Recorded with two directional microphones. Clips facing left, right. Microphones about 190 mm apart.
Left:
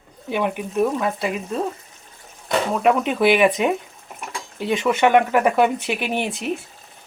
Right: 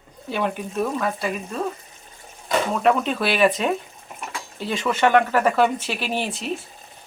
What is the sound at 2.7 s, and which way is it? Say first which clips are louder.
Speech: left 2 dB; 10° left (ahead or behind).